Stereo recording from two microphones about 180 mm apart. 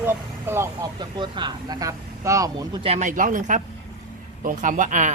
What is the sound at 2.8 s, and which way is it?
Speech, 35° right (ahead or behind).